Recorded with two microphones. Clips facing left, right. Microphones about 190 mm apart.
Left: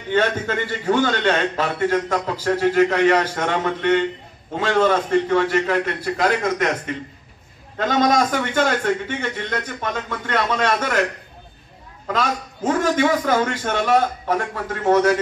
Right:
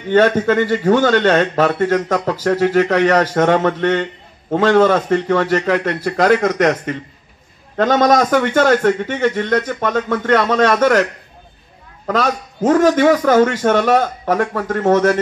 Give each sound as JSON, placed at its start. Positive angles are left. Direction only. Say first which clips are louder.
{"t": 0.1, "sound": "a man's voice", "louder": "right 8 dB", "side_deg": -45}
{"t": 7.7, "sound": "a man's voice", "louder": "right 5 dB", "side_deg": -50}
{"t": 12.1, "sound": "a man's voice", "louder": "right 5 dB", "side_deg": -45}